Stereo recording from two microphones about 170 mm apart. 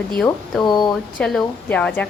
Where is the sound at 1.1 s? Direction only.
5° left (ahead or behind).